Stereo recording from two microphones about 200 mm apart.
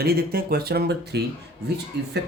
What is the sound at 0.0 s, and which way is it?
Speech, 50° right (ahead or behind).